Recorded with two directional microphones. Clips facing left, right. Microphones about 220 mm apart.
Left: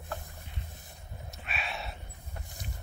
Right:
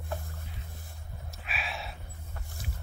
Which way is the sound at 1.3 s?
Centre (ahead or behind).